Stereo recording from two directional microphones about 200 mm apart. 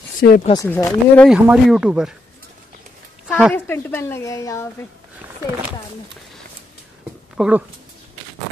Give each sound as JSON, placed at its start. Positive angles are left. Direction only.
{"t": 0.2, "sound": "speech", "side_deg": 45}
{"t": 0.5, "sound": "speech", "side_deg": 15}
{"t": 1.2, "sound": "speech", "side_deg": 0}
{"t": 3.3, "sound": "a sound", "side_deg": -5}
{"t": 3.5, "sound": "speech", "side_deg": 10}
{"t": 7.3, "sound": "speech", "side_deg": -5}